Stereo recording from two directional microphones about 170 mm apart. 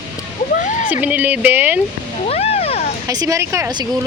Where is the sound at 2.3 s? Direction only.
35° left (ahead or behind).